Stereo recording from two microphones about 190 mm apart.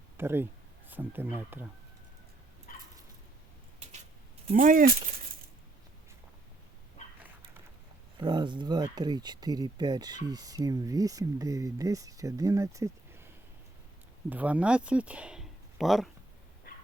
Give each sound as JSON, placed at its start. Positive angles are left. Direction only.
{"t": 0.2, "sound": "speech", "side_deg": -10}
{"t": 2.7, "sound": "a sound", "side_deg": 45}
{"t": 4.4, "sound": "speech", "side_deg": -45}
{"t": 8.2, "sound": "speech", "side_deg": -25}
{"t": 14.3, "sound": "speech", "side_deg": -10}